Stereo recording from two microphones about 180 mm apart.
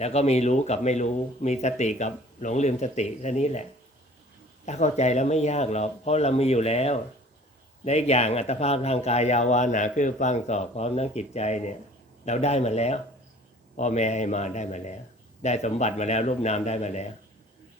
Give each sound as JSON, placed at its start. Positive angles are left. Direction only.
{"t": 0.0, "sound": "a man's voice", "side_deg": 35}